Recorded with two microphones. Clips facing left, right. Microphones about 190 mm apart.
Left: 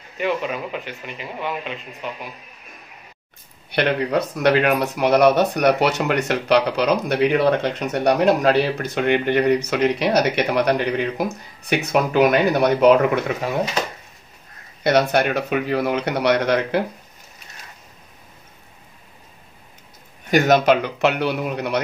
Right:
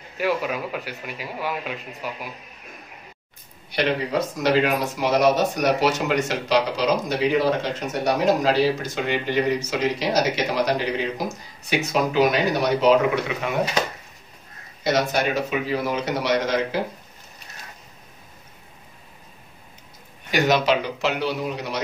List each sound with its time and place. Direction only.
0.2 s speech: 5° right (ahead or behind)
3.7 s speech: 60° left (ahead or behind)
14.8 s speech: 60° left (ahead or behind)
20.2 s speech: 50° left (ahead or behind)